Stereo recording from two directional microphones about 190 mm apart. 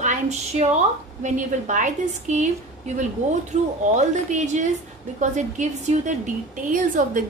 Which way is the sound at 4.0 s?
40° right (ahead or behind).